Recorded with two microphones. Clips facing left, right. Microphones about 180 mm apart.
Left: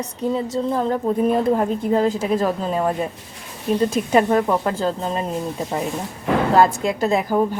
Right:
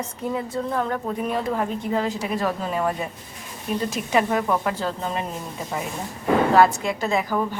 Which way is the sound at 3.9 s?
40° left (ahead or behind).